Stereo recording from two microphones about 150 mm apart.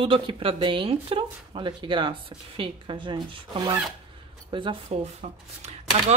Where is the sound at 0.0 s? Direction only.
35° right (ahead or behind).